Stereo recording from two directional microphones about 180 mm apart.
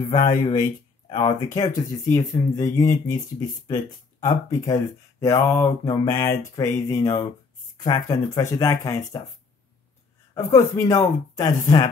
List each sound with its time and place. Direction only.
0.1 s speech: 25° left (ahead or behind)
10.3 s speech: 20° left (ahead or behind)